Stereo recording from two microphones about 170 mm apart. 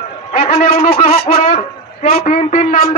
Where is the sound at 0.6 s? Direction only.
55° left (ahead or behind).